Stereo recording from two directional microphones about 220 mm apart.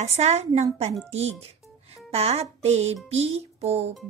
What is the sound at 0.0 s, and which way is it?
Speech, 30° right (ahead or behind).